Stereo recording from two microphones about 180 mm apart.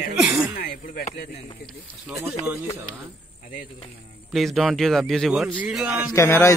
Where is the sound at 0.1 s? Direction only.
5° right (ahead or behind).